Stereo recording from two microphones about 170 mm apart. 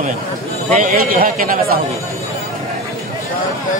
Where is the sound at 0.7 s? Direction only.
45° right (ahead or behind).